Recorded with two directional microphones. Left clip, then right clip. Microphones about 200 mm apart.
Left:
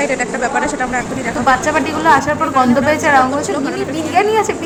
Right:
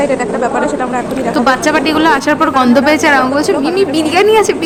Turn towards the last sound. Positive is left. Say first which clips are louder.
# right 4 dB
turn(degrees=-25)  # may be behind; listen again after turning